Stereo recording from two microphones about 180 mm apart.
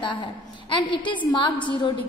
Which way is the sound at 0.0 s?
25° left (ahead or behind).